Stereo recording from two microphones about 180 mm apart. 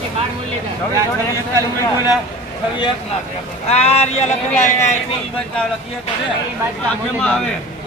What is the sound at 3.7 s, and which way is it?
Speech, 35° left (ahead or behind).